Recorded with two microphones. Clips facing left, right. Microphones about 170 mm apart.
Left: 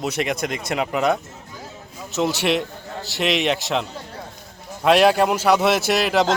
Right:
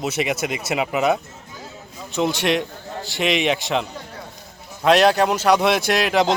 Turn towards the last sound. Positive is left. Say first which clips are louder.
# even
turn(degrees=0)  # may be behind; listen again after turning